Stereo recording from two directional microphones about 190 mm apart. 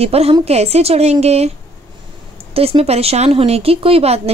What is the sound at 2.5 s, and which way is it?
A woman's voice, 30° right (ahead or behind).